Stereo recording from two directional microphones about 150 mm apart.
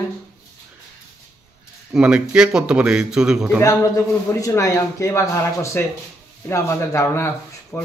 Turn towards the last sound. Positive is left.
turn(degrees=15)  # may be behind; listen again after turning